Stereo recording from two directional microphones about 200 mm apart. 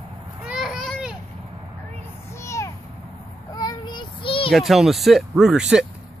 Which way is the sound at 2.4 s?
15° left (ahead or behind).